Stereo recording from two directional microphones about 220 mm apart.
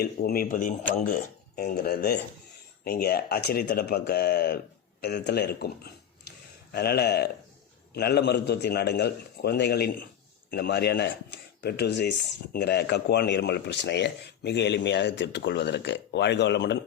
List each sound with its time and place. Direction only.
0.0 s speech: 45° left (ahead or behind)